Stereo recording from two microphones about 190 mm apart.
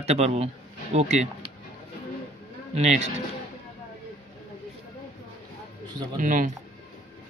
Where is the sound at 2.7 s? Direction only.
35° right (ahead or behind).